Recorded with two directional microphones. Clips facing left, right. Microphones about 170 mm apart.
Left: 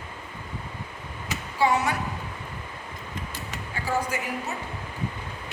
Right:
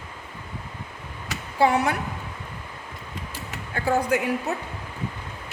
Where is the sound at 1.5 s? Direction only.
60° right (ahead or behind).